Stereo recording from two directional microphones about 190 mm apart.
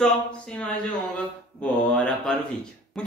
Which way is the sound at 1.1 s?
5° left (ahead or behind).